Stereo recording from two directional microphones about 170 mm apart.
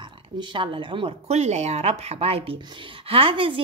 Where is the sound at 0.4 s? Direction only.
30° right (ahead or behind).